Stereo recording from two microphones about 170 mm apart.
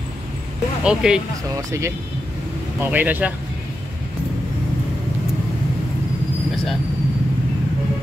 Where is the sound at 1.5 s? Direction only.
15° right (ahead or behind).